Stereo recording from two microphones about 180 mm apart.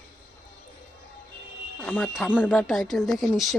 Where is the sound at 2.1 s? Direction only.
5° right (ahead or behind).